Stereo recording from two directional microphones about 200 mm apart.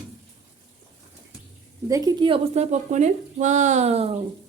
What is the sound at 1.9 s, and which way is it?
A woman's voice, 15° right (ahead or behind).